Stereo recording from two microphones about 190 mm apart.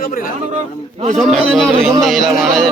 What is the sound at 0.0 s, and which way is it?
Speech, 45° left (ahead or behind).